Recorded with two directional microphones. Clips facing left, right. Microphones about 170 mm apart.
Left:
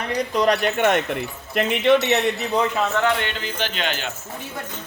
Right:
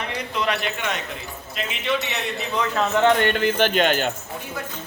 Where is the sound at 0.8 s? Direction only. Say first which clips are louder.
Left 9 dB; 55° left (ahead or behind).